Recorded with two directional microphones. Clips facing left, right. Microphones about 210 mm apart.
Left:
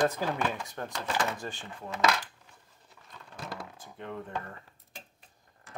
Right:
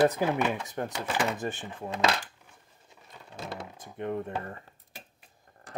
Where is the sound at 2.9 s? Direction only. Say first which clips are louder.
Right 2 dB; 25° right (ahead or behind).